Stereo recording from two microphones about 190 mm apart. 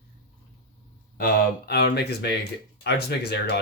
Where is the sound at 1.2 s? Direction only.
55° left (ahead or behind).